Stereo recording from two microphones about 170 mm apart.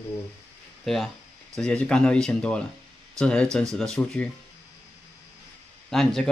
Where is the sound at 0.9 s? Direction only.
Centre (ahead or behind).